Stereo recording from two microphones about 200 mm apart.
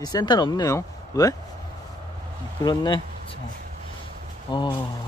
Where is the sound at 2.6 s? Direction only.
20° left (ahead or behind).